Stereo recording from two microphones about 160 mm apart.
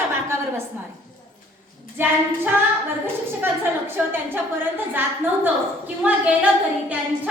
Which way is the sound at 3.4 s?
15° right (ahead or behind).